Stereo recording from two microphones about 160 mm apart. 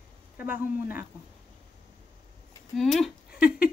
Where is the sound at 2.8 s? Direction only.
Centre (ahead or behind).